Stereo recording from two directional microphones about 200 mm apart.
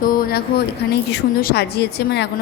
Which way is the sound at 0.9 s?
55° left (ahead or behind).